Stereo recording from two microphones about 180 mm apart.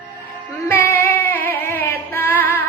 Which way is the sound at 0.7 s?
10° left (ahead or behind).